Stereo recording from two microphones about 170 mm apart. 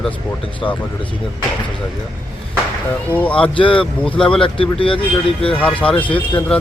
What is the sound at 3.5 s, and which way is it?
Speech, 30° left (ahead or behind).